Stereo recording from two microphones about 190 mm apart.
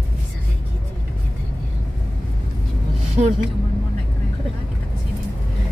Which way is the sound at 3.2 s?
35° right (ahead or behind).